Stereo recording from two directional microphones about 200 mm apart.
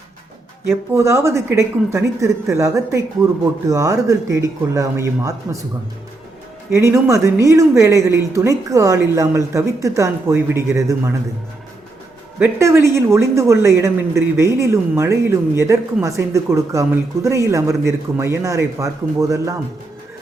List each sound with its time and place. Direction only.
0.9 s a woman's voice: 15° right (ahead or behind)
3.2 s speech: 5° right (ahead or behind)
3.7 s a woman's voice: 15° right (ahead or behind)
6.7 s a woman's voice: 15° right (ahead or behind)
12.4 s a woman's voice: 10° right (ahead or behind)